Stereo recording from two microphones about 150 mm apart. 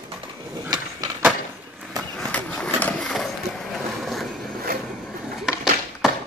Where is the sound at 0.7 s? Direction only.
25° right (ahead or behind).